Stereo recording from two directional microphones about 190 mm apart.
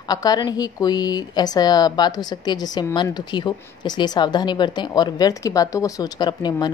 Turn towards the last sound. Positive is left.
turn(degrees=20)  # may be behind; listen again after turning